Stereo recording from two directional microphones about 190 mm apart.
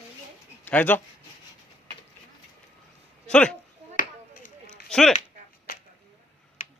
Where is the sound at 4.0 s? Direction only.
45° left (ahead or behind).